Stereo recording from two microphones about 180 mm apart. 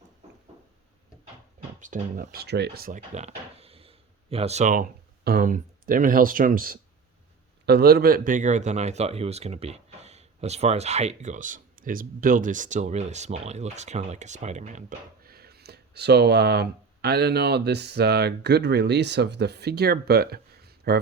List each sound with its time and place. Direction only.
1.8 s speech: 50° right (ahead or behind)
3.2 s speech: 35° right (ahead or behind)
7.6 s a man's voice: 60° right (ahead or behind)